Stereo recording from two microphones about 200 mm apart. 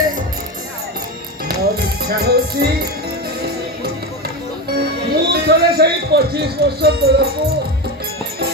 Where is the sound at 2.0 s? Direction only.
55° right (ahead or behind).